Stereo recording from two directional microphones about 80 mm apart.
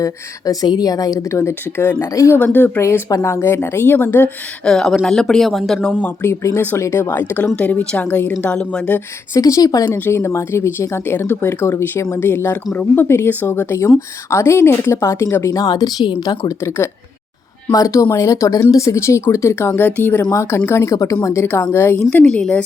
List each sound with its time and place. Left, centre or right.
0.0 s speech: left
1.3 s speech: left
2.4 s speech: left
4.6 s speech: centre
6.2 s speech: left
9.3 s speech: left
9.8 s speech: left
15.5 s a woman's voice: left
16.6 s speech: left
17.7 s speech: left
20.3 s speech: left
20.9 s speech: left
21.7 s speech: left
22.1 s speech: centre